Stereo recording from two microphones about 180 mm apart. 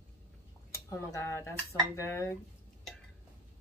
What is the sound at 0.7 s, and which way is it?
Speech, 15° left (ahead or behind).